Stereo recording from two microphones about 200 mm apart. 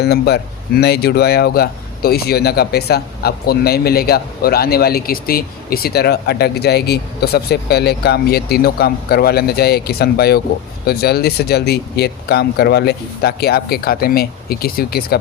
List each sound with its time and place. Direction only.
0.0 s speech: 55° left (ahead or behind)